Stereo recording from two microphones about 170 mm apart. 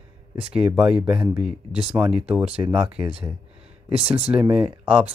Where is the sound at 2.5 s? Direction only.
30° right (ahead or behind).